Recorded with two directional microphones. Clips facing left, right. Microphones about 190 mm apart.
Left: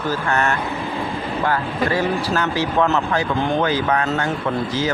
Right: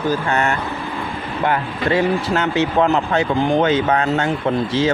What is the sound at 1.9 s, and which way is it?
Speech, 20° right (ahead or behind).